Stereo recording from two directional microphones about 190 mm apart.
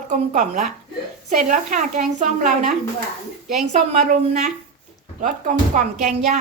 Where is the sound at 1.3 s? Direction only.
40° right (ahead or behind).